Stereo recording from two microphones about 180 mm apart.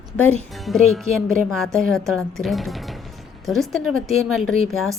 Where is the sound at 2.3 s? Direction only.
Centre (ahead or behind).